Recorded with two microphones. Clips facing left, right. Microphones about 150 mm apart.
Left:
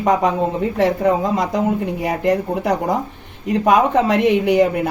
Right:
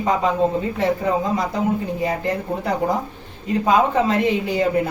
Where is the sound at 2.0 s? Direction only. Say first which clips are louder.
Left 4 dB; 75° left (ahead or behind).